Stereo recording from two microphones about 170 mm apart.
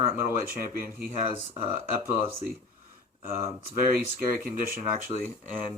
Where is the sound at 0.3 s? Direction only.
55° right (ahead or behind).